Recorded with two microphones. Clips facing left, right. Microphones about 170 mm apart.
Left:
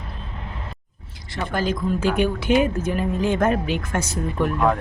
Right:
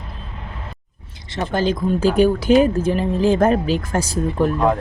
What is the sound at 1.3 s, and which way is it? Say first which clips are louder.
Speech: right 4 dB; 25° right (ahead or behind).